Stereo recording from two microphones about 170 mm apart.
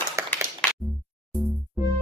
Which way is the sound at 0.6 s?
5° left (ahead or behind).